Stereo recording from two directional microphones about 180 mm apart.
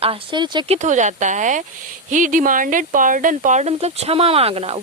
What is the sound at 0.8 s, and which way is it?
Speech, 40° right (ahead or behind).